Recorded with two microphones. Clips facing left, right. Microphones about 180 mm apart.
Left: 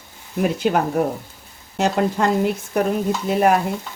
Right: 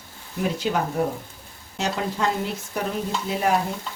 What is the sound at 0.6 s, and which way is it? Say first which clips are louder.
Speech: left 5 dB; 60° left (ahead or behind).